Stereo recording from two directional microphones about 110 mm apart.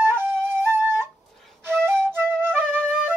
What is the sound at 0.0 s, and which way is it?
Flute, 20° right (ahead or behind).